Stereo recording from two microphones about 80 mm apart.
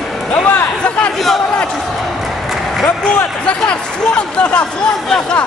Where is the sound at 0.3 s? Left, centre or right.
Centre.